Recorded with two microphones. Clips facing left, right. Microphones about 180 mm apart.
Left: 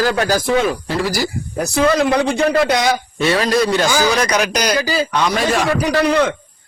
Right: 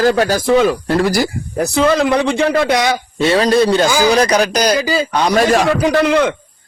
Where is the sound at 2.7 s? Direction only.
25° right (ahead or behind); by 5.6 s 40° right (ahead or behind).